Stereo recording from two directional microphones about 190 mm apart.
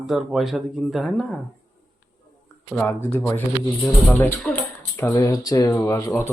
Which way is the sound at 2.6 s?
10° left (ahead or behind).